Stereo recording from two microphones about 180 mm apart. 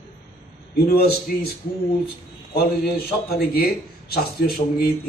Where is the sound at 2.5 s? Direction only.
60° left (ahead or behind).